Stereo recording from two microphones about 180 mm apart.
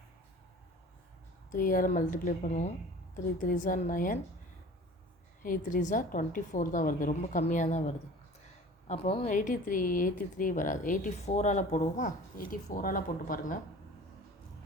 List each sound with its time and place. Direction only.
1.5 s speech: 50° left (ahead or behind)
5.4 s speech: 50° left (ahead or behind)